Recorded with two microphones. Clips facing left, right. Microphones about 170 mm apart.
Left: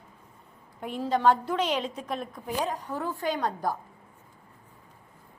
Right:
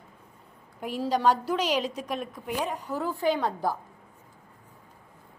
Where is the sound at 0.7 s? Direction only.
25° left (ahead or behind).